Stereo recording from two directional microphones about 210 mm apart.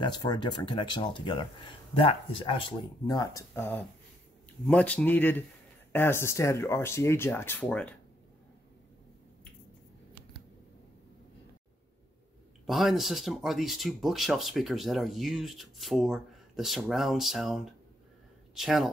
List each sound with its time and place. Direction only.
0.0 s speech: 20° left (ahead or behind)
12.6 s speech: centre (ahead or behind)